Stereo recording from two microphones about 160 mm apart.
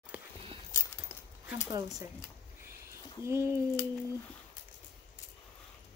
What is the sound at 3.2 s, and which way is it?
Speech, 15° right (ahead or behind).